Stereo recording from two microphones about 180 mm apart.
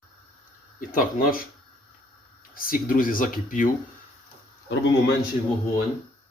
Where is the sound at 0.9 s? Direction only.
50° left (ahead or behind).